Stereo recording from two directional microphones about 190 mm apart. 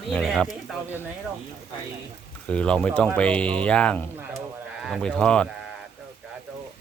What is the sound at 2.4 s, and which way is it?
Speech, 5° left (ahead or behind).